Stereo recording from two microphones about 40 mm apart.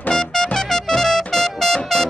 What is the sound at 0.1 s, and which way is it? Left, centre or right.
Music, centre.